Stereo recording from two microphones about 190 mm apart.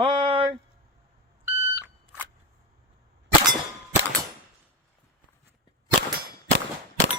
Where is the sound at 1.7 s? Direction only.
10° right (ahead or behind).